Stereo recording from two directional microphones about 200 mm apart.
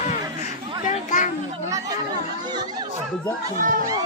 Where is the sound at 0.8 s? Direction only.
40° left (ahead or behind).